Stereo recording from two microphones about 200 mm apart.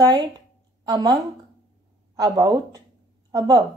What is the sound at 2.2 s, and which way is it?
A woman's voice, 20° right (ahead or behind).